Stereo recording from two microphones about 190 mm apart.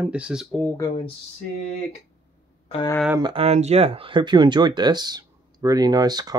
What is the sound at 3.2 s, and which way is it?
Speech, 25° right (ahead or behind).